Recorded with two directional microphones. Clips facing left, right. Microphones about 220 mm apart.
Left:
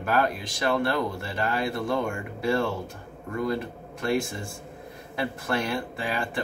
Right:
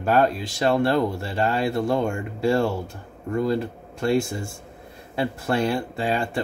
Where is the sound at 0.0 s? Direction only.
25° right (ahead or behind).